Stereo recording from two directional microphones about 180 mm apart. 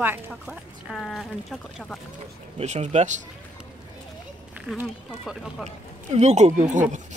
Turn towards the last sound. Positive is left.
turn(degrees=-40)  # may be behind; listen again after turning